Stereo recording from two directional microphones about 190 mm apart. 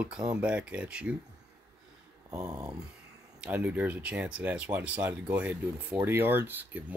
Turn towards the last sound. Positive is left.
turn(degrees=-10)  # may be behind; listen again after turning